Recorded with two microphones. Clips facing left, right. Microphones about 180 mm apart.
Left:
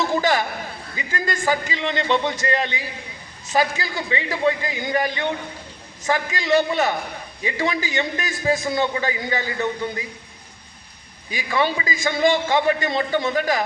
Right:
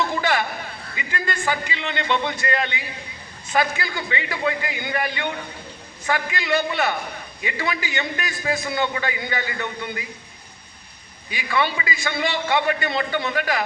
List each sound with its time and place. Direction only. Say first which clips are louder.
0.2 s a man's voice: left 2 dB; 40° left (ahead or behind)
6.3 s a man's voice: left 7 dB; 35° left (ahead or behind)
11.3 s a man's voice: left 2 dB; 40° left (ahead or behind)